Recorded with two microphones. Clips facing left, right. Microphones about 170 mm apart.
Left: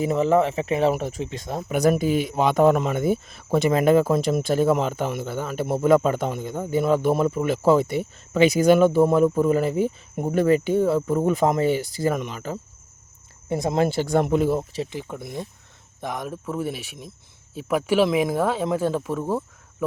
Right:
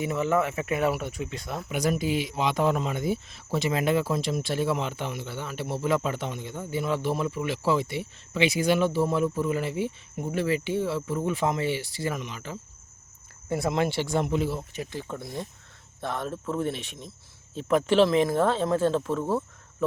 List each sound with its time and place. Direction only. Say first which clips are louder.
0.0 s speech: left 6 dB; 35° left (ahead or behind)
1.7 s speech: left 6 dB; 50° left (ahead or behind)
13.5 s speech: left 3 dB; 20° left (ahead or behind)
13.7 s speech: left 7 dB; 40° left (ahead or behind)
14.8 s speech: left 2 dB; 15° left (ahead or behind)